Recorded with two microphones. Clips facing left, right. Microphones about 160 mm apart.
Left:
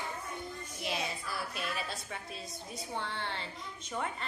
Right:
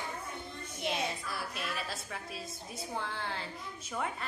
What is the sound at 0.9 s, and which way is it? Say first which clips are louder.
A woman's voice: right 2 dB; centre (ahead or behind).